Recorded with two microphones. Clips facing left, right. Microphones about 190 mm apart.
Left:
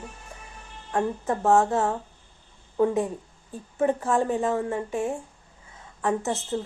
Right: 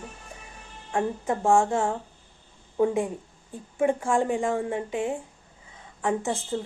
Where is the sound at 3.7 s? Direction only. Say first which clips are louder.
Even; 10° right (ahead or behind).